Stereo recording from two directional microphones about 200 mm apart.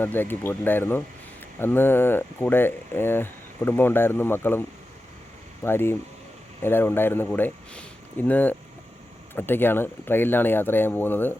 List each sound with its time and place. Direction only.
0.0 s speech: 10° left (ahead or behind)
5.6 s speech: 10° left (ahead or behind)